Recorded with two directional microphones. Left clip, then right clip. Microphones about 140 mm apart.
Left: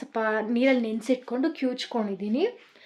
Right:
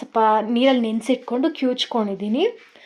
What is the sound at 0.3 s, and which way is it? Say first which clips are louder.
Speech: right 6 dB; 20° right (ahead or behind).